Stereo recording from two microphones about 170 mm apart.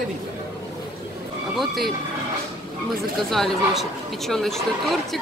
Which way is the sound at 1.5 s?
Centre (ahead or behind).